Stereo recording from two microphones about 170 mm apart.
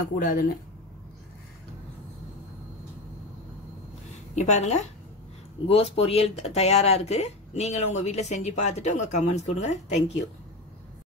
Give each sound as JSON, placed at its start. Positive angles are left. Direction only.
{"t": 0.1, "sound": "speech", "side_deg": 55}
{"t": 4.4, "sound": "speech", "side_deg": 40}